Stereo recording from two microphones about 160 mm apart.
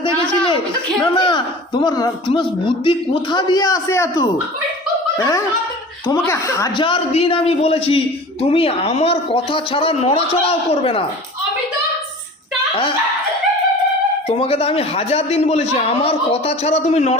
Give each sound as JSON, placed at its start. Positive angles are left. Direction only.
{"t": 1.1, "sound": "a man's voice", "side_deg": 30}
{"t": 6.7, "sound": "a man's voice", "side_deg": 35}
{"t": 14.3, "sound": "a man's voice", "side_deg": 40}